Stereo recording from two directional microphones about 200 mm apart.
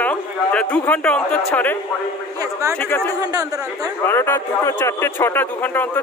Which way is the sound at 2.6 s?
15° right (ahead or behind).